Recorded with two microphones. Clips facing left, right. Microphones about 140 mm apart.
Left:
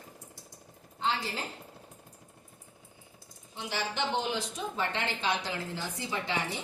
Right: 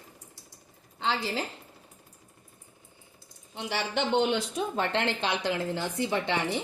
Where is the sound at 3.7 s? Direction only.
65° right (ahead or behind).